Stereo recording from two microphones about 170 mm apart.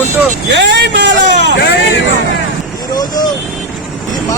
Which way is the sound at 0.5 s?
90° right.